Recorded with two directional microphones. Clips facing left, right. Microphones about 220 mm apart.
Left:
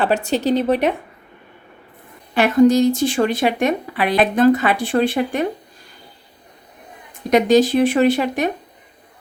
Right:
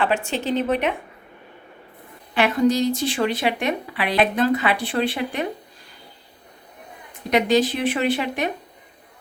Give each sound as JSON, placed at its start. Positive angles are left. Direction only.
{"t": 0.0, "sound": "speech", "side_deg": 35}
{"t": 2.3, "sound": "speech", "side_deg": 45}
{"t": 7.3, "sound": "speech", "side_deg": 45}